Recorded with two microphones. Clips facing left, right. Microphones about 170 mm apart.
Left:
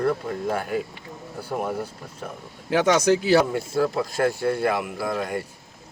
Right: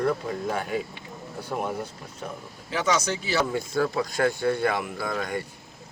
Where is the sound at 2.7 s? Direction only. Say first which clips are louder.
Left 7 dB; 55° left (ahead or behind).